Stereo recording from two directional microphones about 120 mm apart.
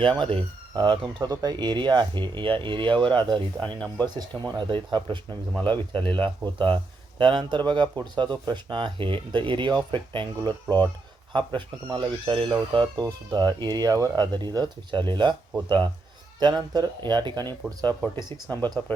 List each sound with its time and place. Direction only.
0.0 s speech: 45° right (ahead or behind)
5.5 s speech: 15° left (ahead or behind)
6.1 s speech: 45° right (ahead or behind)
16.4 s speech: 35° right (ahead or behind)
18.4 s speech: 15° left (ahead or behind)